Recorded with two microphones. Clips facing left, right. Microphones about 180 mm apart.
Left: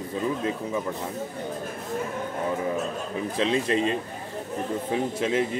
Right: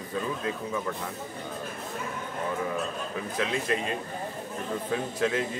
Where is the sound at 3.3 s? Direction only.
25° left (ahead or behind).